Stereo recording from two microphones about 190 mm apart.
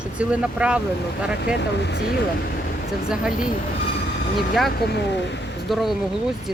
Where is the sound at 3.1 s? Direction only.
5° right (ahead or behind).